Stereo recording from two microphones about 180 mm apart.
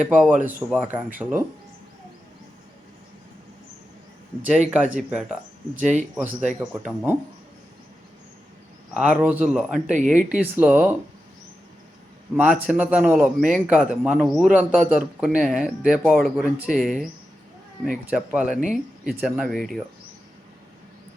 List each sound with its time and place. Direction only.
0.0 s speech: 10° right (ahead or behind)
4.7 s speech: 5° right (ahead or behind)
5.8 s speech: 40° right (ahead or behind)
6.1 s speech: 5° right (ahead or behind)
8.9 s a man's voice: 5° right (ahead or behind)
9.8 s speech: 45° right (ahead or behind)
10.3 s speech: 5° right (ahead or behind)
12.4 s a man's voice: 10° right (ahead or behind)
18.5 s speech: 45° right (ahead or behind)
19.0 s a man's voice: centre (ahead or behind)